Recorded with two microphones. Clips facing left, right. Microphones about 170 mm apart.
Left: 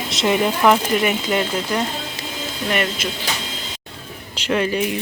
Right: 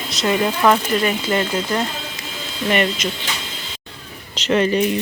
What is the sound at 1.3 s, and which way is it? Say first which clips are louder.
Speech: right 1 dB; 5° left (ahead or behind).